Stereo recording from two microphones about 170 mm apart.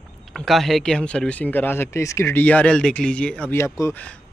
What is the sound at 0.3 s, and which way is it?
Speech, centre (ahead or behind).